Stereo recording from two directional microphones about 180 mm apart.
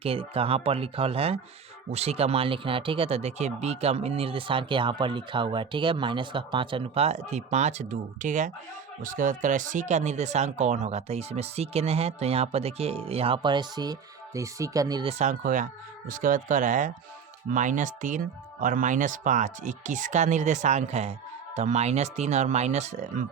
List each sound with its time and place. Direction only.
0.0 s speech: 30° right (ahead or behind)
15.0 s speech: 40° right (ahead or behind)